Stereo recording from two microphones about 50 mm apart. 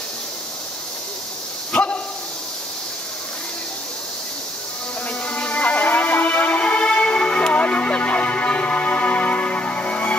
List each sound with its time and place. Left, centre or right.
1.7 s dog: left
5.2 s music: left